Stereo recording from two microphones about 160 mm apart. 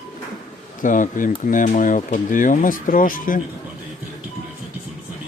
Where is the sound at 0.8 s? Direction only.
55° left (ahead or behind).